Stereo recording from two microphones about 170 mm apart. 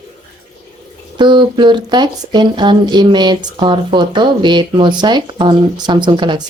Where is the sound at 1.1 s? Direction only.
30° right (ahead or behind).